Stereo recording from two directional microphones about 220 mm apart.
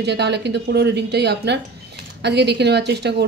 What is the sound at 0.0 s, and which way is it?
A woman's voice, 50° right (ahead or behind).